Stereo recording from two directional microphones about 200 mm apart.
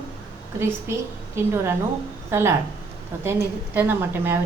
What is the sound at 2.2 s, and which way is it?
A woman's voice, 10° right (ahead or behind).